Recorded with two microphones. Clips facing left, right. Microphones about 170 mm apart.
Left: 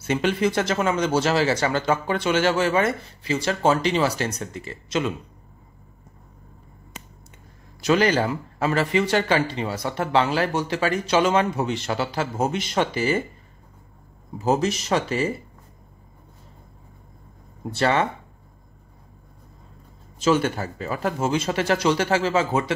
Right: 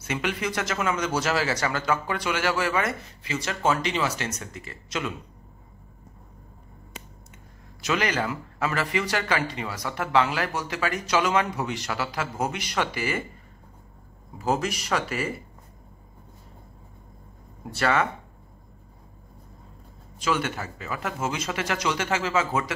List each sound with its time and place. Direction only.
0.0 s speech: 30° left (ahead or behind)
7.8 s speech: 35° left (ahead or behind)
14.4 s speech: 25° left (ahead or behind)
17.7 s speech: 25° left (ahead or behind)
20.2 s speech: 30° left (ahead or behind)